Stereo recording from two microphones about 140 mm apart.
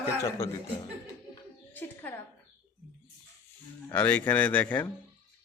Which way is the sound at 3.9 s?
10° left (ahead or behind).